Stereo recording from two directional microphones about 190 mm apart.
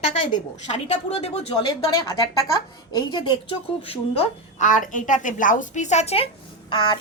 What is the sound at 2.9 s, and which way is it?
Speech, 25° left (ahead or behind).